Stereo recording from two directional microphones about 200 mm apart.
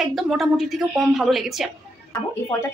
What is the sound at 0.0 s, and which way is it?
A woman's voice, centre (ahead or behind).